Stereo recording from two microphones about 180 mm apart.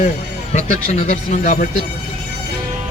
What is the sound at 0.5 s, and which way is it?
Speech, 40° left (ahead or behind).